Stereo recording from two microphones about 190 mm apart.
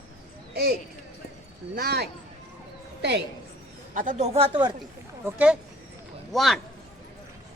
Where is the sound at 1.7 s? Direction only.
55° right (ahead or behind).